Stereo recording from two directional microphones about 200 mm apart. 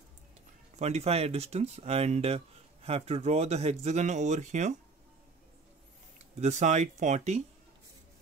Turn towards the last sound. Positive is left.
turn(degrees=-35)  # may be behind; listen again after turning